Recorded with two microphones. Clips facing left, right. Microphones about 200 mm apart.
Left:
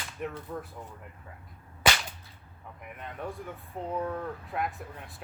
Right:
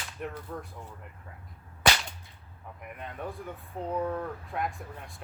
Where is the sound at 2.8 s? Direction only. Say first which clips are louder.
Even; centre (ahead or behind).